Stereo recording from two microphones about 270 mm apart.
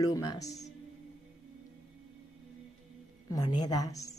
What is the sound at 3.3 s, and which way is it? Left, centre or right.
Speech, centre.